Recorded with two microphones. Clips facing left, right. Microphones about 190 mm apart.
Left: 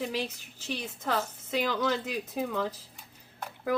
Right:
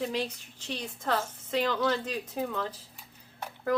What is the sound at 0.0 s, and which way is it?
A woman's voice, 5° left (ahead or behind).